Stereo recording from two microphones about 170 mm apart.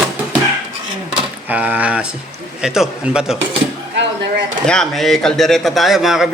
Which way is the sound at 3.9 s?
90° right.